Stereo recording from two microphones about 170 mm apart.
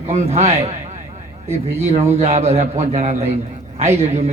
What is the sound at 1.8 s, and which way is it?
A man's voice, 40° right (ahead or behind).